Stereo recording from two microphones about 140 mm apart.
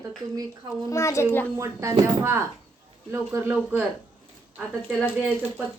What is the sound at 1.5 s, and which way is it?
Speech, 20° right (ahead or behind).